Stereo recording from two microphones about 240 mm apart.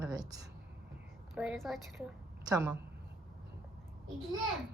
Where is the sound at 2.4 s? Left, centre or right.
Centre.